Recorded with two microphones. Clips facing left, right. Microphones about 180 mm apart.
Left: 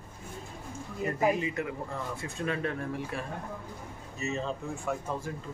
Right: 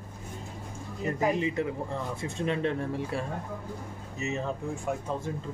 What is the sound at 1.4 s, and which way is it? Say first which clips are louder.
Speech: right 4 dB; 25° right (ahead or behind).